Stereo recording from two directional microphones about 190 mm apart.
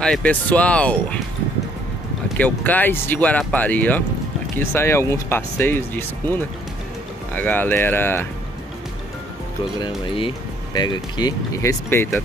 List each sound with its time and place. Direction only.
0.0 s speech: 5° left (ahead or behind)
2.3 s speech: 10° left (ahead or behind)
10.0 s speech: 25° left (ahead or behind)